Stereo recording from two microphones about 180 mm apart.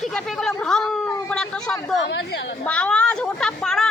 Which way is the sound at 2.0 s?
75° left (ahead or behind).